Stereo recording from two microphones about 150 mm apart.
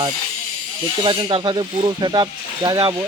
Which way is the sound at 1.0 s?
35° right (ahead or behind).